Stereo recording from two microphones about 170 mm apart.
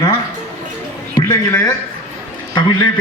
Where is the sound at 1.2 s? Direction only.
30° left (ahead or behind).